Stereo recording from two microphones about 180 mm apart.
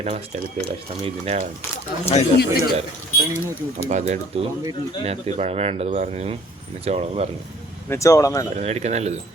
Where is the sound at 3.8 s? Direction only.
40° right (ahead or behind).